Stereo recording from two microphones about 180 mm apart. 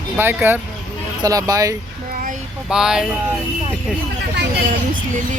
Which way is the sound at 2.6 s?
5° right (ahead or behind).